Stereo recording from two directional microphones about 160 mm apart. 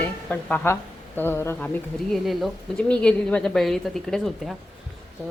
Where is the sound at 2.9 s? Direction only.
5° left (ahead or behind).